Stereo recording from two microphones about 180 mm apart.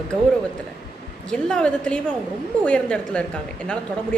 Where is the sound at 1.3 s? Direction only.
5° left (ahead or behind).